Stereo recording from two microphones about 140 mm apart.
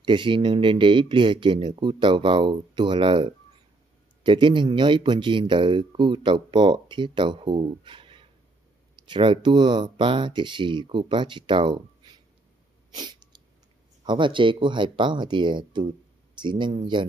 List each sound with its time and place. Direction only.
0.0 s speech: 35° right (ahead or behind)
12.9 s sneeze: 30° right (ahead or behind)
14.0 s speech: 35° right (ahead or behind)